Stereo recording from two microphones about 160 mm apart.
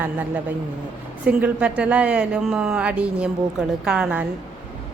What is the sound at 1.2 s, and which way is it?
Speech, 5° right (ahead or behind).